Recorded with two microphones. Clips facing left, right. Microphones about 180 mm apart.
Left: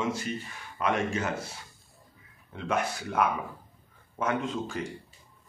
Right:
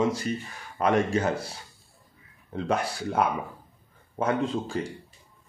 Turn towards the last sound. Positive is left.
turn(degrees=-35)  # may be behind; listen again after turning